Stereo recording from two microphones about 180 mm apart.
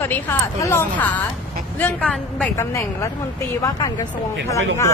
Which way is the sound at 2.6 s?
15° left (ahead or behind).